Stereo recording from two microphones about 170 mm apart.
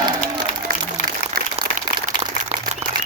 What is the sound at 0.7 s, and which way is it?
Speech, 60° right (ahead or behind).